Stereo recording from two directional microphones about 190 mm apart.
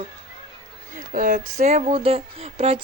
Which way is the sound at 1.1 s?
45° right (ahead or behind).